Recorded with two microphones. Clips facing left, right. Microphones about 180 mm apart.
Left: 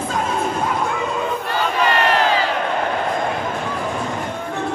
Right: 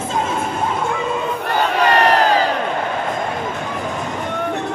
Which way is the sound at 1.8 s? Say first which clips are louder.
Right 3 dB; 40° right (ahead or behind).